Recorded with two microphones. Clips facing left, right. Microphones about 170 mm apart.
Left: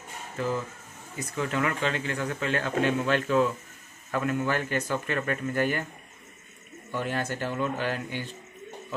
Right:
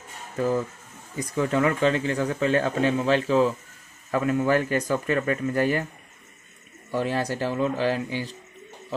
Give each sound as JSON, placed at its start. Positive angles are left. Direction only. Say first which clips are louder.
{"t": 1.1, "sound": "speech", "louder": "right 6 dB", "side_deg": -35}
{"t": 6.9, "sound": "speech", "louder": "right 5 dB", "side_deg": -35}